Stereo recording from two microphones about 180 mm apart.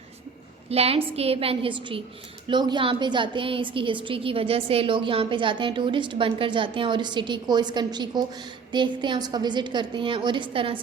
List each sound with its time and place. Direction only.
0.7 s a woman's voice: 35° right (ahead or behind)